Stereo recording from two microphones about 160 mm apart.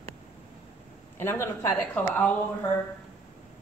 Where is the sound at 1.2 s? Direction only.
15° left (ahead or behind).